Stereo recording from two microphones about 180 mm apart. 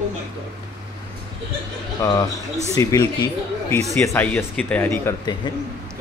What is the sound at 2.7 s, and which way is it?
Speech, 20° left (ahead or behind).